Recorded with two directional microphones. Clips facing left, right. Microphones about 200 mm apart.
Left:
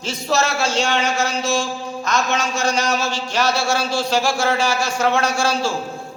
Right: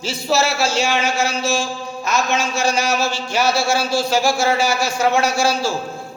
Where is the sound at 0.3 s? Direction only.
5° right (ahead or behind).